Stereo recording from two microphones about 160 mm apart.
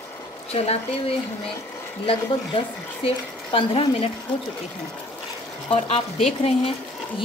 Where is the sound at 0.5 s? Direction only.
40° left (ahead or behind).